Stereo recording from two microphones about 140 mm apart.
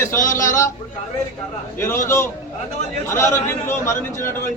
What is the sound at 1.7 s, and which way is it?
Speech, 15° left (ahead or behind).